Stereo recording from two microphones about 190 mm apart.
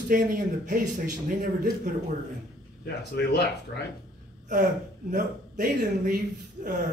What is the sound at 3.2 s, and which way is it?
Speech, 60° left (ahead or behind).